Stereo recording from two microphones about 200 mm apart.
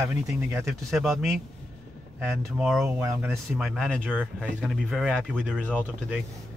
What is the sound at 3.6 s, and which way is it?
Speech, centre (ahead or behind).